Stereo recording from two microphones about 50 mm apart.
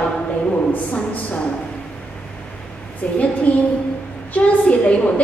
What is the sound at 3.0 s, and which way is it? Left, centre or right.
A woman's voice, left.